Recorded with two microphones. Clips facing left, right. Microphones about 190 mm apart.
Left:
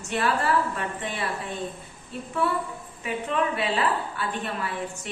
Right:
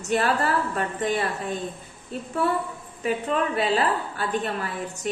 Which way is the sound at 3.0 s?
40° right (ahead or behind).